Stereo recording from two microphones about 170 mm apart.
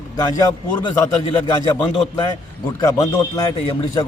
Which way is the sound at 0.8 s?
25° left (ahead or behind).